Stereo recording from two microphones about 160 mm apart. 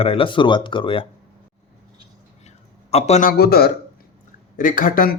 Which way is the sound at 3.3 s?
75° left (ahead or behind).